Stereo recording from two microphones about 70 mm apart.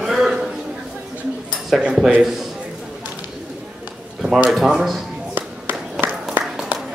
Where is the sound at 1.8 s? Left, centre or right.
Centre.